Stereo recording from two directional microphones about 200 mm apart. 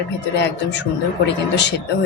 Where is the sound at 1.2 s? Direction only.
60° left (ahead or behind).